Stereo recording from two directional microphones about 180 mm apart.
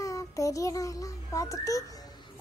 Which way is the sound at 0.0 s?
20° left (ahead or behind).